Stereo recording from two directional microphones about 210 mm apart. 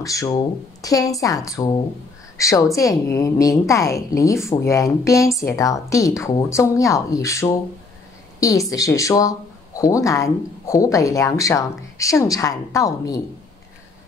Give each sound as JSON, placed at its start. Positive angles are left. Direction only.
{"t": 0.0, "sound": "speech", "side_deg": 15}